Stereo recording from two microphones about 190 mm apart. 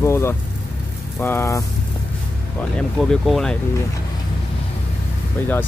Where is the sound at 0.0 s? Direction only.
15° left (ahead or behind).